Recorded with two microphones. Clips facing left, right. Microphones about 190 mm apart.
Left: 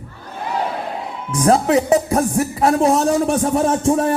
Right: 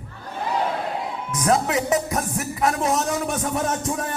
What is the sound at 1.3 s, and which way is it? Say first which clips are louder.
Speech: left 7 dB; 30° left (ahead or behind).